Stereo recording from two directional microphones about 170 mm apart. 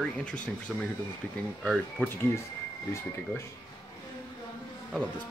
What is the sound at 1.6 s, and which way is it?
Speech, centre (ahead or behind).